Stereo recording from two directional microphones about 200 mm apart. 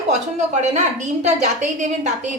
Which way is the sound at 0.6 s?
35° right (ahead or behind).